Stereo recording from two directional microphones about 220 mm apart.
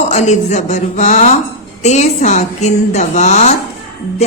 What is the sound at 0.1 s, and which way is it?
A woman's voice, 30° left (ahead or behind).